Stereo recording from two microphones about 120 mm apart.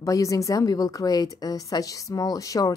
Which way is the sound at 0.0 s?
30° left (ahead or behind).